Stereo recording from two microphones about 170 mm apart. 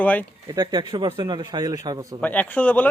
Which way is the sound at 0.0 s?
10° left (ahead or behind).